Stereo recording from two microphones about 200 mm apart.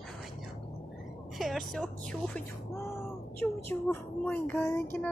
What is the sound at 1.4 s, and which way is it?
Music, centre (ahead or behind).